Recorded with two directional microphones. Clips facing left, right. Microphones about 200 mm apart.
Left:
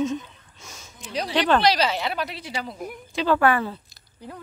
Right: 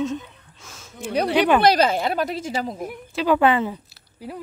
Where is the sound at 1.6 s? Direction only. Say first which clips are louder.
Right 4 dB; 50° right (ahead or behind).